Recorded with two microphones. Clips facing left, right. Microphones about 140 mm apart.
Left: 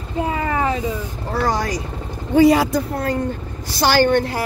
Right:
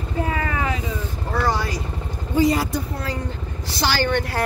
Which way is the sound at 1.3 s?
40° left (ahead or behind).